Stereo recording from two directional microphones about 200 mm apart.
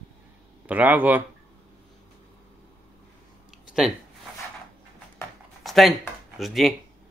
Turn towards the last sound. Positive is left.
turn(degrees=0)  # may be behind; listen again after turning